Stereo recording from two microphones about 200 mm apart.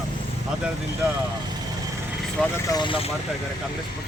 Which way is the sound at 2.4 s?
5° left (ahead or behind).